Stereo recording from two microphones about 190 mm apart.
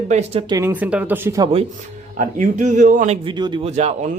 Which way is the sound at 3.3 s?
25° right (ahead or behind).